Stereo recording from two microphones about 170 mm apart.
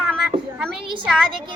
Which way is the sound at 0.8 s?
30° right (ahead or behind).